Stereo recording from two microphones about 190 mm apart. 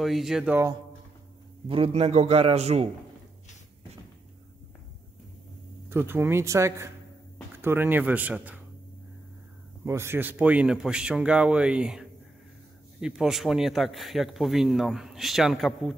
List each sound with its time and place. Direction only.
0.0 s speech: centre (ahead or behind)
1.7 s a man's voice: 30° right (ahead or behind)
5.9 s speech: 10° right (ahead or behind)
9.8 s speech: 15° right (ahead or behind)